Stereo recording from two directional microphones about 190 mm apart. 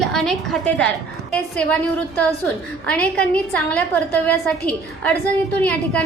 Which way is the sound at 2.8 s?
5° left (ahead or behind).